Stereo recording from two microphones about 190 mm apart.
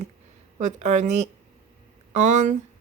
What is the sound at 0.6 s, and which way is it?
A woman's voice, 40° right (ahead or behind).